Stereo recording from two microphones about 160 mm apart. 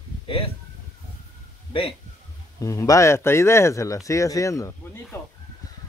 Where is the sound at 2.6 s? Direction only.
20° left (ahead or behind).